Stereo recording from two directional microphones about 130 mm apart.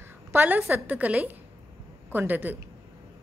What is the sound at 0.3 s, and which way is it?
A woman's voice, 15° right (ahead or behind).